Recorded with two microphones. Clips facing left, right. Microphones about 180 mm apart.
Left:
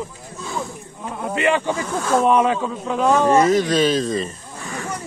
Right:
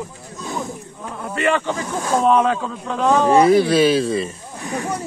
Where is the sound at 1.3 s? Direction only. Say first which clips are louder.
Even; 15° left (ahead or behind).